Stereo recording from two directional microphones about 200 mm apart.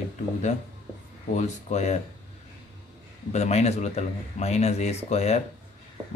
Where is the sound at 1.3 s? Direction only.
35° left (ahead or behind).